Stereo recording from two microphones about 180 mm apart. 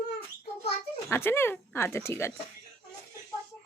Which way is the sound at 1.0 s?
15° left (ahead or behind).